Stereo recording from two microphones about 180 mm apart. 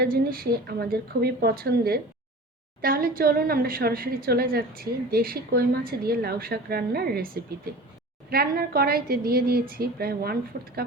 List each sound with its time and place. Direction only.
0.0 s a woman's voice: 55° right (ahead or behind)